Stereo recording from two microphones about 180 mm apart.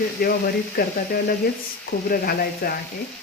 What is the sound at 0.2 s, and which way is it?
Frying, 55° left (ahead or behind).